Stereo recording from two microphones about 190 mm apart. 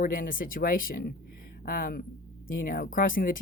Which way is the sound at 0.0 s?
45° left (ahead or behind).